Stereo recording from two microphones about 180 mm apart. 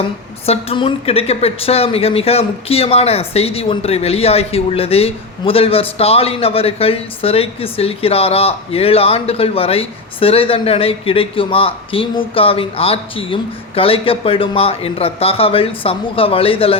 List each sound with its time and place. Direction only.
0.4 s a woman's voice: 35° left (ahead or behind)